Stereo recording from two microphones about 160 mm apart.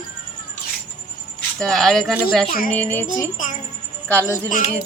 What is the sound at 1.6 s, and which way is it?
Speech, 5° left (ahead or behind).